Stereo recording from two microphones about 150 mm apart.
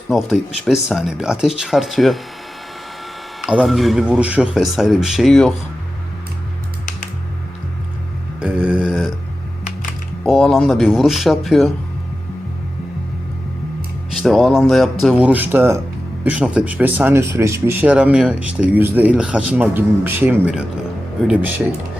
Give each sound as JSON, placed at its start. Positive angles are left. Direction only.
{"t": 0.1, "sound": "speech", "side_deg": 0}
{"t": 3.4, "sound": "speech", "side_deg": -5}
{"t": 8.4, "sound": "speech", "side_deg": -10}
{"t": 10.2, "sound": "speech", "side_deg": 0}
{"t": 14.2, "sound": "speech", "side_deg": 0}
{"t": 15.3, "sound": "speech", "side_deg": -15}